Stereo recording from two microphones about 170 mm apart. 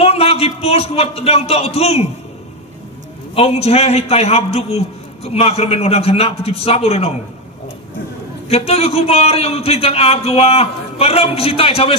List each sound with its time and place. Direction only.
0.0 s a man's voice: 35° left (ahead or behind)
3.3 s a man's voice: 35° left (ahead or behind)
8.5 s a man's voice: 35° left (ahead or behind)